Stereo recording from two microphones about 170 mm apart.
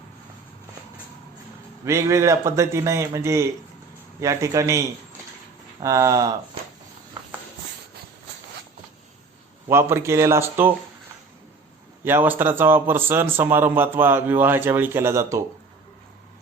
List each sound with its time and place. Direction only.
1.8 s a man's voice: 20° right (ahead or behind)
5.8 s speech: 20° right (ahead or behind)
9.6 s a man's voice: 15° right (ahead or behind)
12.0 s a man's voice: 10° right (ahead or behind)